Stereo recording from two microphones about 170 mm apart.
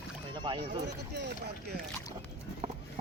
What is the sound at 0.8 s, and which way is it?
Speech, 85° right.